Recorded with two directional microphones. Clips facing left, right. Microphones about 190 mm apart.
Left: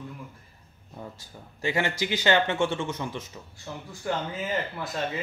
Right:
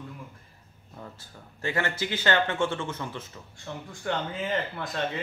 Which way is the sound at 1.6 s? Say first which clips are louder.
Left 2 dB; 15° left (ahead or behind).